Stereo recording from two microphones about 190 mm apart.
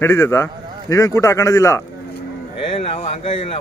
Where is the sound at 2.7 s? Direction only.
30° left (ahead or behind).